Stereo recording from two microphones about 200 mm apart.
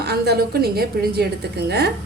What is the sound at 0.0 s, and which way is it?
A woman's voice, 55° right (ahead or behind).